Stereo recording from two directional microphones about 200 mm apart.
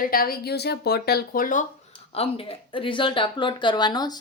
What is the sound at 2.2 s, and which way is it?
Speech, 30° left (ahead or behind).